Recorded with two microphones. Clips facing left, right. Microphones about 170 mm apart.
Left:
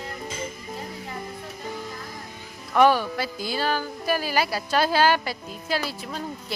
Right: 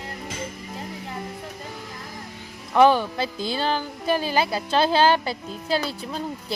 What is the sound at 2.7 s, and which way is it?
Speech, 25° right (ahead or behind).